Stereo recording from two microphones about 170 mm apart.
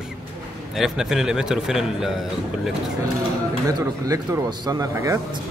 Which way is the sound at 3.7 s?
20° right (ahead or behind).